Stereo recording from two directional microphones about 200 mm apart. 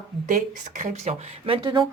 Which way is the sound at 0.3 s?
40° right (ahead or behind).